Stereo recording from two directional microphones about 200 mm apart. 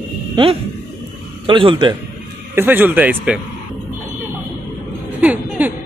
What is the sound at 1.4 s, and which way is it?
Speech, 25° right (ahead or behind).